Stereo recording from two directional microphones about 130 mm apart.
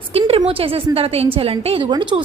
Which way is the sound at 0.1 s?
50° right (ahead or behind).